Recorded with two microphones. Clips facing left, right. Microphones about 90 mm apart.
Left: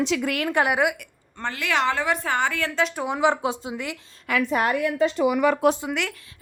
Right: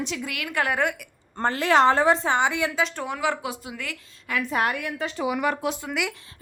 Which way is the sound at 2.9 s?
20° left (ahead or behind).